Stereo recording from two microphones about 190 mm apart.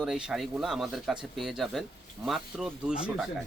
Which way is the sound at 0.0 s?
5° right (ahead or behind).